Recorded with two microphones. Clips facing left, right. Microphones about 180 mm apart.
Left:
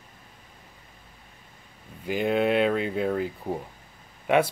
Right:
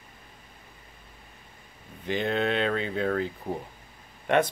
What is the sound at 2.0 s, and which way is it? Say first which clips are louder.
Speech: left 3 dB; 10° left (ahead or behind).